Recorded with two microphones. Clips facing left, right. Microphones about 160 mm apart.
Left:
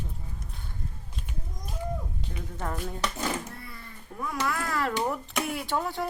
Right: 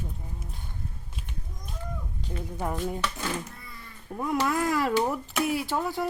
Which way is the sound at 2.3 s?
15° right (ahead or behind).